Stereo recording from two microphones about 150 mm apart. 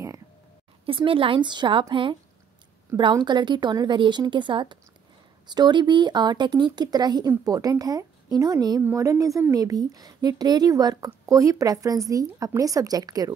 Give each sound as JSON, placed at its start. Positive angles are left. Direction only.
{"t": 0.8, "sound": "a woman's voice", "side_deg": -35}